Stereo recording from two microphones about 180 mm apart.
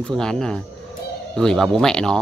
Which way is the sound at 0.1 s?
5° left (ahead or behind).